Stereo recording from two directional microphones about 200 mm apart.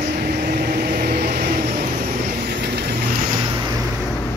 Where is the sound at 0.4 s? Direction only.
50° right (ahead or behind).